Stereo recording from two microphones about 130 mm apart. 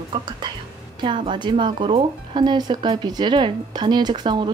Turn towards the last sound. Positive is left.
turn(degrees=-35)  # may be behind; listen again after turning